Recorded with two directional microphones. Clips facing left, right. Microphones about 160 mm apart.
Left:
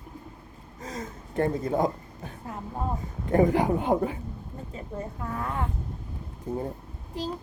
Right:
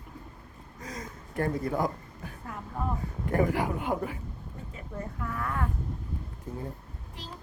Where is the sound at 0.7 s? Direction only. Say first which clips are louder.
Left 4 dB; 25° left (ahead or behind).